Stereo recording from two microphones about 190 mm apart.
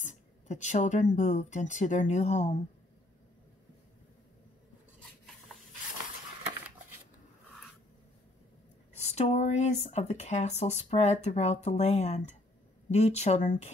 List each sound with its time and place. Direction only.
0.0 s speech: 40° left (ahead or behind)
8.9 s speech: 35° left (ahead or behind)